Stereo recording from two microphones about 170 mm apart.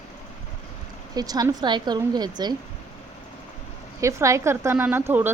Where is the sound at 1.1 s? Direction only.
20° right (ahead or behind).